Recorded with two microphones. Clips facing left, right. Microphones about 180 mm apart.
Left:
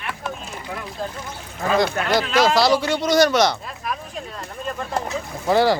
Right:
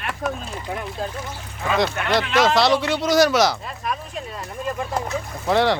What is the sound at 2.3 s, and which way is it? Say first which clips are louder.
Speech: even; centre (ahead or behind).